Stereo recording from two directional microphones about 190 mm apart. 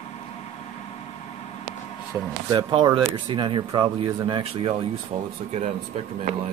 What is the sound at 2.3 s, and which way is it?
Speech, 20° right (ahead or behind).